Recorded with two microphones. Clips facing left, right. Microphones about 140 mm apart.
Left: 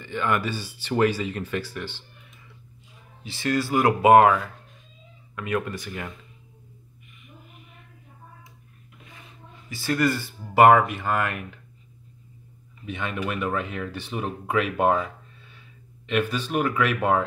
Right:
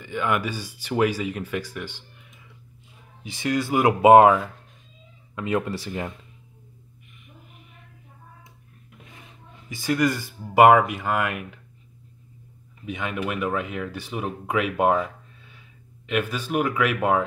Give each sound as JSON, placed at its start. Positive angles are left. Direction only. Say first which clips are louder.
{"t": 0.0, "sound": "speech", "louder": "even", "side_deg": -10}
{"t": 3.3, "sound": "speech", "louder": "even", "side_deg": -15}
{"t": 9.7, "sound": "speech", "louder": "right 1 dB", "side_deg": -15}
{"t": 12.8, "sound": "speech", "louder": "right 1 dB", "side_deg": -10}
{"t": 16.1, "sound": "speech", "louder": "even", "side_deg": -10}